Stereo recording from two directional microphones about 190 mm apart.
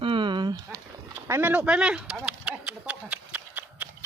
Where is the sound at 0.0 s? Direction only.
25° right (ahead or behind).